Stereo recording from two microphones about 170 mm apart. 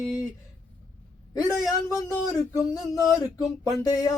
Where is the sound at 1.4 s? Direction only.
20° left (ahead or behind).